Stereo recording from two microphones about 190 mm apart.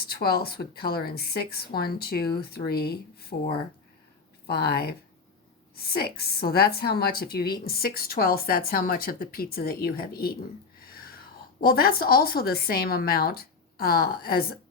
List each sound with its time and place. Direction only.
0.0 s a woman's voice: 55° left (ahead or behind)
10.8 s a sound: 50° left (ahead or behind)
11.7 s a woman's voice: 50° left (ahead or behind)